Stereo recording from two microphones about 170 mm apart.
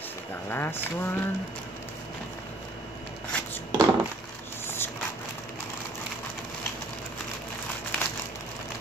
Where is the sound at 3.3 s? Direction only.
5° left (ahead or behind).